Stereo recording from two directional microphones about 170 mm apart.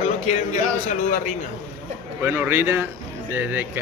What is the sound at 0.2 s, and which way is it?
Speech, 40° left (ahead or behind).